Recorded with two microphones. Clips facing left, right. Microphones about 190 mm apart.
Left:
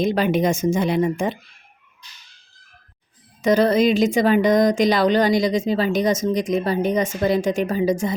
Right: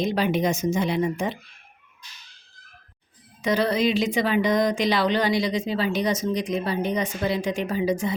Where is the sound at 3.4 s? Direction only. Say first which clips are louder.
Left 6 dB; 45° left (ahead or behind).